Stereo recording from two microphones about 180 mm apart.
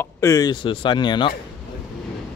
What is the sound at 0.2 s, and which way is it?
Speech, 20° left (ahead or behind).